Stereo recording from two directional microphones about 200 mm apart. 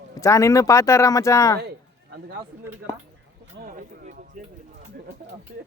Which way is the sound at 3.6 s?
40° right (ahead or behind).